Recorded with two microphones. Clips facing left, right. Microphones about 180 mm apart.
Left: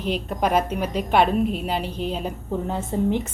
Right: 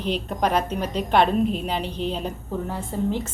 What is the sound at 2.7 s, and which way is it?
Speech, 20° left (ahead or behind).